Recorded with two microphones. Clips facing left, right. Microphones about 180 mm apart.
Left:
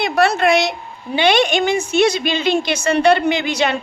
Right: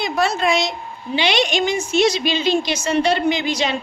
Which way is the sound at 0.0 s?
65° left (ahead or behind).